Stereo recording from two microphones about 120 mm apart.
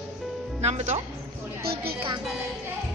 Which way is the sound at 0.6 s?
70° right (ahead or behind).